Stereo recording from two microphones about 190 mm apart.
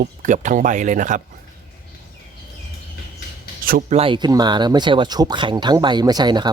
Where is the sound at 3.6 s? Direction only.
50° right (ahead or behind).